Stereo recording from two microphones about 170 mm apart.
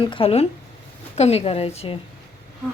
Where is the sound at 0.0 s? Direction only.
30° left (ahead or behind).